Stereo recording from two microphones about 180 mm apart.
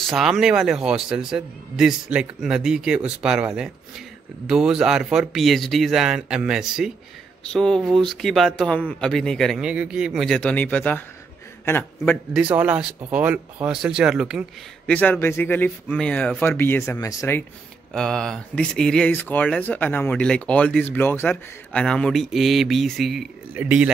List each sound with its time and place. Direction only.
0.0 s speech: centre (ahead or behind)
4.5 s a man's voice: 5° right (ahead or behind)
12.4 s speech: 10° right (ahead or behind)
14.9 s speech: 10° left (ahead or behind)
17.9 s speech: 5° left (ahead or behind)